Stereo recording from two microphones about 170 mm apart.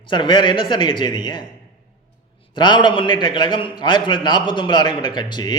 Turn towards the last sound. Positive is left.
turn(degrees=25)  # may be behind; listen again after turning